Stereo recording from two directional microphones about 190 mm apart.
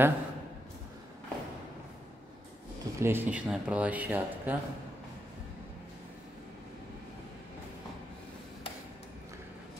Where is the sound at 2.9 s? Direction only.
10° right (ahead or behind).